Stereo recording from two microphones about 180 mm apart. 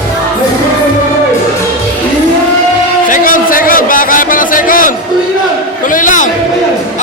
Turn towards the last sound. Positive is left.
turn(degrees=45)  # may be behind; listen again after turning